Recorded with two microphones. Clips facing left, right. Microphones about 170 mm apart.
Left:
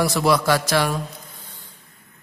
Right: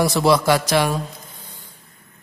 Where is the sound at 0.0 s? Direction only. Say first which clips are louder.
Right 2 dB; 25° right (ahead or behind).